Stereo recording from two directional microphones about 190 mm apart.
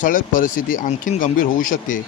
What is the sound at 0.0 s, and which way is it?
Speech, 45° left (ahead or behind).